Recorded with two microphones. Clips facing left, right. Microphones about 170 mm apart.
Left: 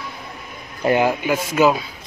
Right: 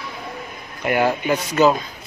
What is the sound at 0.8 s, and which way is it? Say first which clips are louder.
Speech: left 4 dB; 35° left (ahead or behind).